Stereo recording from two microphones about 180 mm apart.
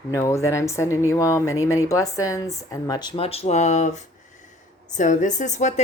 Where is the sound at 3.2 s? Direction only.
35° left (ahead or behind).